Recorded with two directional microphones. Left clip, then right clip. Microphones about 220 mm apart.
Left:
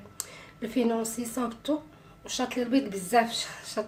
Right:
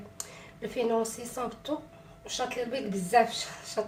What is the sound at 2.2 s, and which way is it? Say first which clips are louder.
A woman's voice: left 2 dB; 40° left (ahead or behind).